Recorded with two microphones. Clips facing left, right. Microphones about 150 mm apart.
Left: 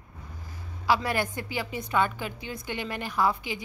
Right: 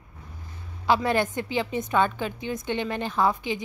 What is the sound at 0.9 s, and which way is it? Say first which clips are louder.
Speech: right 3 dB; 25° right (ahead or behind).